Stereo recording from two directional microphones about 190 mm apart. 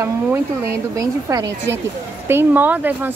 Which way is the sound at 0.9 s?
20° right (ahead or behind).